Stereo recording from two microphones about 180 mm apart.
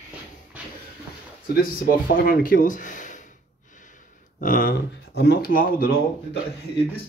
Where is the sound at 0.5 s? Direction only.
10° right (ahead or behind).